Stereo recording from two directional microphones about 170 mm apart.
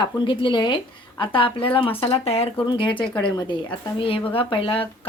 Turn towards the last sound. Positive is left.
turn(degrees=30)  # may be behind; listen again after turning